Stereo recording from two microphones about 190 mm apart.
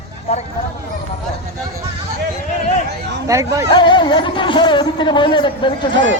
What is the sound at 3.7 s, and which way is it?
Speech, 25° left (ahead or behind).